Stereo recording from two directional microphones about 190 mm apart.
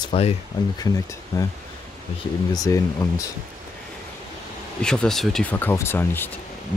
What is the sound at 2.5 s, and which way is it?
Speech, 15° left (ahead or behind).